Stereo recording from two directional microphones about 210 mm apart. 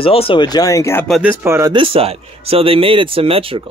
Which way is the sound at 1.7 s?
25° right (ahead or behind).